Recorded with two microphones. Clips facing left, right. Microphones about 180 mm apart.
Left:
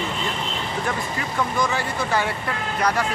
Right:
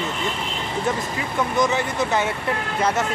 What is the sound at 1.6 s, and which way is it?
Speech, 20° right (ahead or behind).